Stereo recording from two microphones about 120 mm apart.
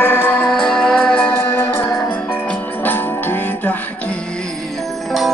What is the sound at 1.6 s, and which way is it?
Music, 20° left (ahead or behind).